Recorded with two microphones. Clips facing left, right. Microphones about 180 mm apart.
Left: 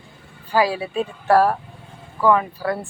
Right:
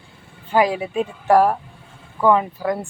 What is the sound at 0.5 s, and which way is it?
Speech, 20° right (ahead or behind).